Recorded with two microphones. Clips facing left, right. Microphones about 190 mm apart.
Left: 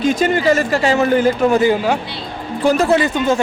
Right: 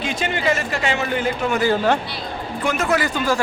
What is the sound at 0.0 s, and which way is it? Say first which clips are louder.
Speech: left 8 dB; 40° left (ahead or behind).